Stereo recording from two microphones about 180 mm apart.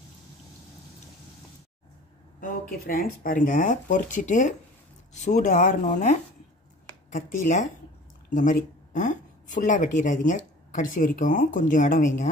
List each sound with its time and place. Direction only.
2.4 s speech: 55° left (ahead or behind)
7.1 s speech: 45° left (ahead or behind)